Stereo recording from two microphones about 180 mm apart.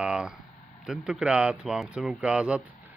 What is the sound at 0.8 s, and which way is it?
Speech, 5° right (ahead or behind).